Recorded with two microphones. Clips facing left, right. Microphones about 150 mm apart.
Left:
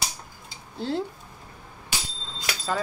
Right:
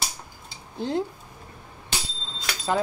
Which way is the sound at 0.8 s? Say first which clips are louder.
Right 2 dB; 15° right (ahead or behind).